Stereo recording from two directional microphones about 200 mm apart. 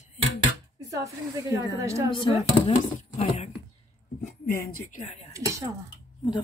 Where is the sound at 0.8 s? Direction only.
15° right (ahead or behind).